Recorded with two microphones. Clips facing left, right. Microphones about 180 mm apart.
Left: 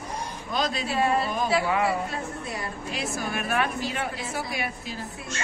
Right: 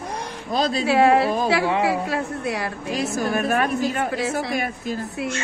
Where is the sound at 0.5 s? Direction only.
35° right (ahead or behind).